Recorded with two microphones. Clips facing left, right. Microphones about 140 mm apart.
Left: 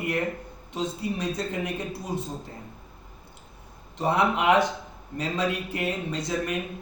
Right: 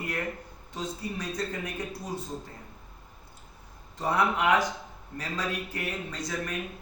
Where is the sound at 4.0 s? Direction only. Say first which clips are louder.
Left 3 dB; 25° left (ahead or behind).